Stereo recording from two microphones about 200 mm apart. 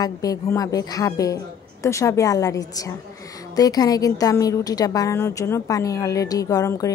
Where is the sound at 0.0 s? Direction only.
15° left (ahead or behind).